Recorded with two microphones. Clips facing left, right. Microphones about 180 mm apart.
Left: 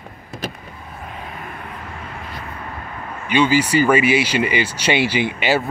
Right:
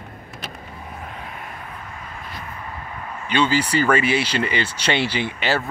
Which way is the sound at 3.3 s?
10° left (ahead or behind).